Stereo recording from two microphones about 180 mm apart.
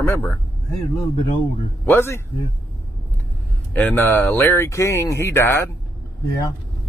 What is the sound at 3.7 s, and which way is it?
Speech, 10° left (ahead or behind).